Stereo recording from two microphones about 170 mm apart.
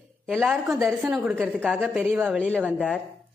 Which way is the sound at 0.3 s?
Centre (ahead or behind).